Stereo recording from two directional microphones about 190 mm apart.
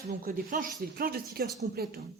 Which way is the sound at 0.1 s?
50° right (ahead or behind).